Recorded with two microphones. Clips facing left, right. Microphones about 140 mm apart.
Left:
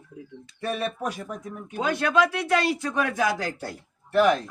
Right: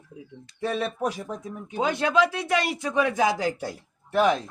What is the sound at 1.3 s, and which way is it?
A man's voice, 25° right (ahead or behind).